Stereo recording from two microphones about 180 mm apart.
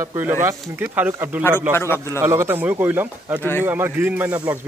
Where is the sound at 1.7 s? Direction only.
15° left (ahead or behind).